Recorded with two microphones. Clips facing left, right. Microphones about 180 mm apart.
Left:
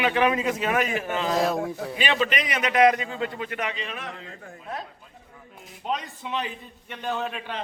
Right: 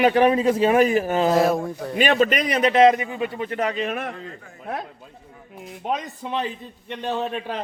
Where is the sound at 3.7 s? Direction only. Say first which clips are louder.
Right 9 dB; 50° right (ahead or behind).